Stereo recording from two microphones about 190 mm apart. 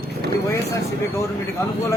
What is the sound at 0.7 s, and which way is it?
Speech, 15° left (ahead or behind).